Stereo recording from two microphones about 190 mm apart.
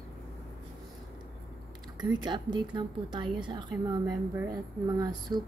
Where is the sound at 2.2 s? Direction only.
25° right (ahead or behind).